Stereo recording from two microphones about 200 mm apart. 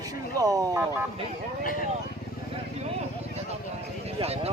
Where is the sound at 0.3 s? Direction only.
15° right (ahead or behind).